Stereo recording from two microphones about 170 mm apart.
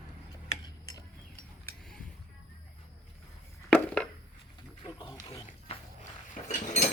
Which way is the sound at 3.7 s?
10° left (ahead or behind).